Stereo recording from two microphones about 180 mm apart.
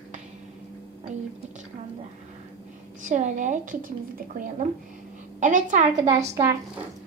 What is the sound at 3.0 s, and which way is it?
A woman's voice, 45° right (ahead or behind).